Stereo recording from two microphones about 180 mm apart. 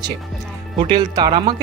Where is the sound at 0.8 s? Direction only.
25° right (ahead or behind).